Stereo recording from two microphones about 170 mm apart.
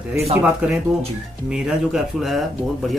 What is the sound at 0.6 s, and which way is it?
Speech, 5° right (ahead or behind).